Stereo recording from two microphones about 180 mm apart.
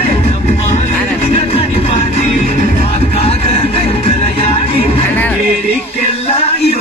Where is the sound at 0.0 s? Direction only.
35° left (ahead or behind).